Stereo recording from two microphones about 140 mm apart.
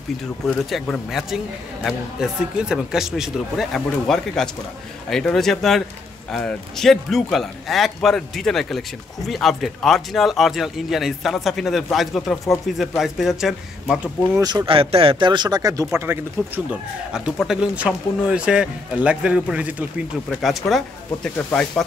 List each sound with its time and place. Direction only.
0.7 s a man's voice: 5° left (ahead or behind)
14.3 s speech: 25° right (ahead or behind)
17.1 s a man's voice: 5° right (ahead or behind)